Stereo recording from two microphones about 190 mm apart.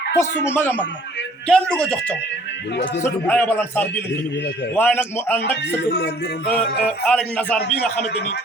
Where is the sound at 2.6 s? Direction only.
65° left (ahead or behind).